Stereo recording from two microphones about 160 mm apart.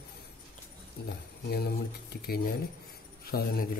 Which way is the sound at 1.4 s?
80° left.